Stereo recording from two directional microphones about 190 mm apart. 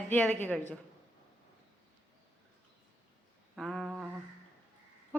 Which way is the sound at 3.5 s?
Centre (ahead or behind).